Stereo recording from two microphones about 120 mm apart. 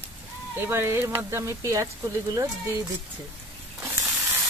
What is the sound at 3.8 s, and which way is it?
Sizzle, 25° right (ahead or behind).